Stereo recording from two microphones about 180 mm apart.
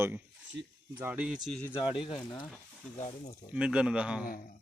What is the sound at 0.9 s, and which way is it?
Speech, 10° right (ahead or behind).